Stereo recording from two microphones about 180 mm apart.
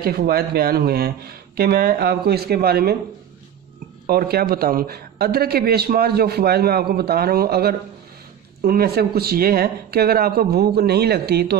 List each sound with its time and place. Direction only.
0.0 s a man's voice: 60° right (ahead or behind)
4.1 s a man's voice: 60° right (ahead or behind)